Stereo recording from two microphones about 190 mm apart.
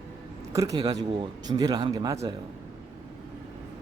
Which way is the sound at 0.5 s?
20° right (ahead or behind).